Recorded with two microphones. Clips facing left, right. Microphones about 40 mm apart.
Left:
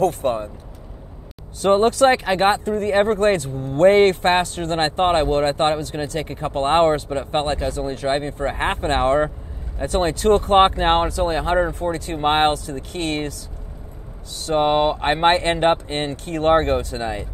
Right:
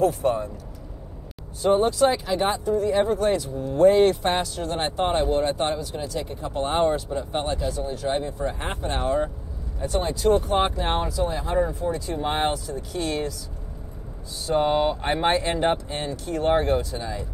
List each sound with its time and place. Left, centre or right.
0.0 s speech: left
1.6 s speech: left
14.4 s speech: left